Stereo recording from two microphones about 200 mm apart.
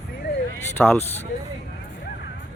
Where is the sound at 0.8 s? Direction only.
5° left (ahead or behind).